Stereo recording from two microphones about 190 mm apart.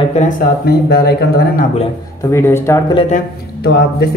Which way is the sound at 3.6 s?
60° left (ahead or behind).